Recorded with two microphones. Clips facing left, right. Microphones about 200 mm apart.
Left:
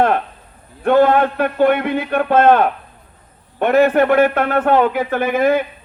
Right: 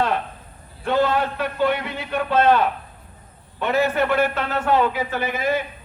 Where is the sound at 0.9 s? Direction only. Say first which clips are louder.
Left 8 dB; 55° left (ahead or behind).